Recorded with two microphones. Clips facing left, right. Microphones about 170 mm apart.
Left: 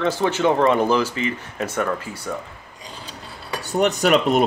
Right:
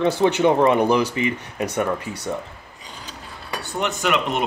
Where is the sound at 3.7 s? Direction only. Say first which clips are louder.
Left 5 dB; 40° left (ahead or behind).